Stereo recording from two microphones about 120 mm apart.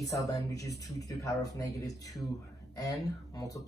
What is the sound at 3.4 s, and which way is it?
Speech, 30° left (ahead or behind).